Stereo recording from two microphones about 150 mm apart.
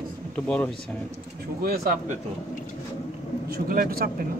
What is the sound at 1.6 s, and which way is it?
Speech, 75° right (ahead or behind).